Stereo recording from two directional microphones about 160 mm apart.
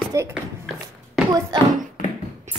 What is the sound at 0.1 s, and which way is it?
Speech, 20° right (ahead or behind).